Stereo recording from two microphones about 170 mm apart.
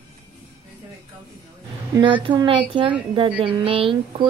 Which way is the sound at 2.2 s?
30° right (ahead or behind).